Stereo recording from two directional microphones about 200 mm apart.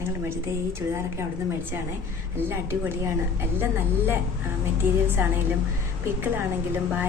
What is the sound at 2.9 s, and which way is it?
Speech, 10° right (ahead or behind).